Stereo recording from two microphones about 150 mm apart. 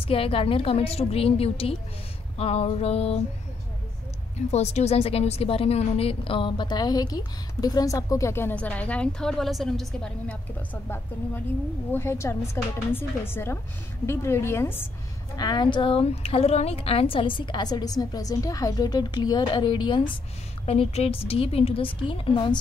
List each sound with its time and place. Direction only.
0.0 s a woman's voice: 40° left (ahead or behind)
2.3 s music: 40° left (ahead or behind)
4.5 s a woman's voice: 45° left (ahead or behind); by 14.8 s 15° left (ahead or behind)
15.3 s a woman's voice: 30° left (ahead or behind)